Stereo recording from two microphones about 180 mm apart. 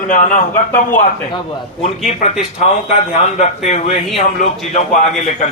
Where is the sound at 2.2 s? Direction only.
40° left (ahead or behind).